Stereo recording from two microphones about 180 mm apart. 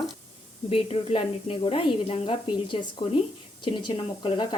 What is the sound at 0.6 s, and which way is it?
Speech, 35° left (ahead or behind).